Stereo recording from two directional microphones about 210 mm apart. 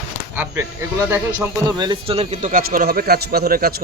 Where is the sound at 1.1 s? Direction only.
15° right (ahead or behind).